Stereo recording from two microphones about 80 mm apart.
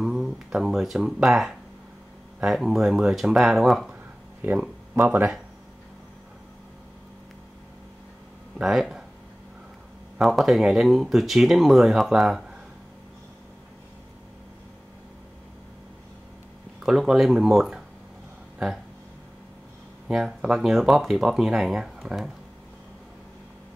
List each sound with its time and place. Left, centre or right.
0.0 s speech: centre
4.5 s speech: right
8.5 s speech: centre
10.1 s speech: centre
16.8 s speech: centre
20.1 s speech: centre